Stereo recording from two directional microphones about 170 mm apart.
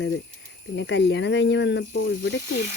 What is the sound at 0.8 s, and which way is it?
Speech, 90° left.